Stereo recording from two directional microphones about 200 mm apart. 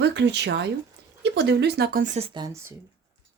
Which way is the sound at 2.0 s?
35° right (ahead or behind).